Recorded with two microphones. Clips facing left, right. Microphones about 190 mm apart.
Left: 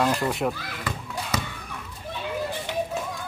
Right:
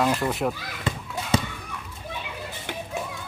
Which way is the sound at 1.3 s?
25° right (ahead or behind).